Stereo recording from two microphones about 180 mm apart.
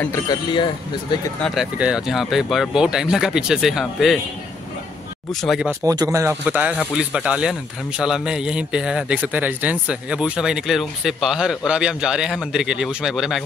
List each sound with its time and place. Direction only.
0.0 s speech: 20° left (ahead or behind)
1.4 s a man's voice: 5° right (ahead or behind)
5.3 s a man's voice: centre (ahead or behind)
5.9 s a man's voice: 20° right (ahead or behind); by 13.4 s centre (ahead or behind)